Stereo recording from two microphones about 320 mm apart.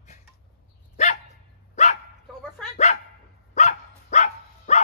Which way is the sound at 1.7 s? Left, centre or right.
Left.